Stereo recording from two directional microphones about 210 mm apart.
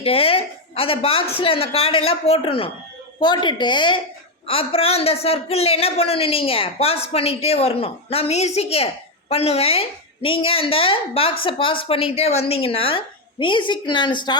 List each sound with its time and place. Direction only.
0.0 s a man's voice: 25° left (ahead or behind)